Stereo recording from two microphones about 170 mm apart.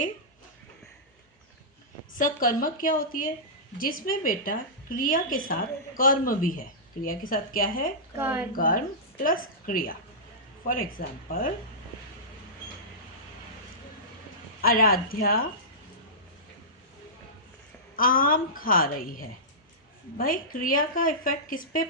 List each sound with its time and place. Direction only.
2.1 s speech: 55° left (ahead or behind)
8.1 s speech: 10° right (ahead or behind)
8.5 s speech: 55° left (ahead or behind)
11.3 s speech: 55° left (ahead or behind)
14.6 s speech: 60° left (ahead or behind)
17.9 s speech: 55° left (ahead or behind)